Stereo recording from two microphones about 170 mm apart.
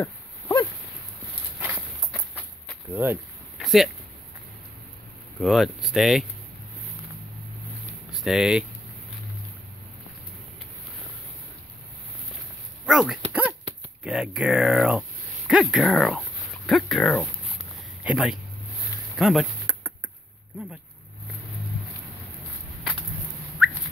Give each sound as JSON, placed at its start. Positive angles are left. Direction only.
{"t": 0.0, "sound": "a sound", "side_deg": 15}
{"t": 2.9, "sound": "speech", "side_deg": -10}
{"t": 3.5, "sound": "a sound", "side_deg": 0}
{"t": 5.4, "sound": "speech", "side_deg": 0}
{"t": 8.1, "sound": "speech", "side_deg": 0}
{"t": 12.8, "sound": "speech", "side_deg": 0}
{"t": 13.3, "sound": "dog", "side_deg": -10}
{"t": 14.0, "sound": "speech", "side_deg": -5}
{"t": 19.1, "sound": "a sound", "side_deg": 0}
{"t": 23.6, "sound": "car alarm", "side_deg": -5}